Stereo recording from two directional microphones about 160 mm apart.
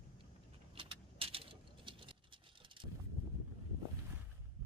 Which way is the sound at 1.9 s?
30° right (ahead or behind).